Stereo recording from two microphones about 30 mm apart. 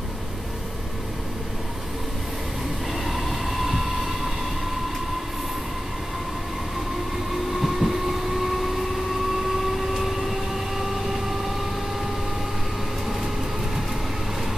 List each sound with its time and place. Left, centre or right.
2.9 s train: centre
7.6 s vehicle: centre
9.5 s vehicle: centre